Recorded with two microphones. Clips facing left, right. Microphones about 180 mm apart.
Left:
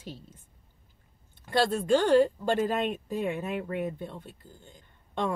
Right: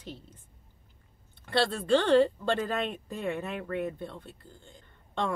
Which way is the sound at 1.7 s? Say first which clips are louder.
Left 1 dB; 15° left (ahead or behind).